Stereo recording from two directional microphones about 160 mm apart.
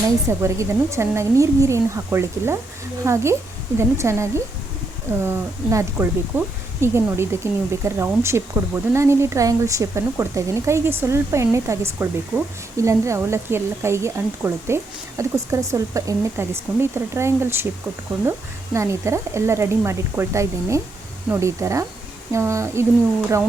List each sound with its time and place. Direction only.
0.3 s speech: 15° right (ahead or behind)